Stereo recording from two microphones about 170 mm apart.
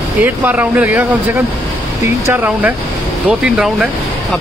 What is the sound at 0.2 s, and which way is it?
Speech, 10° right (ahead or behind).